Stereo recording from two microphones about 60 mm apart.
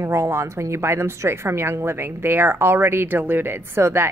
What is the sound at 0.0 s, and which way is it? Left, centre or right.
A woman's voice, right.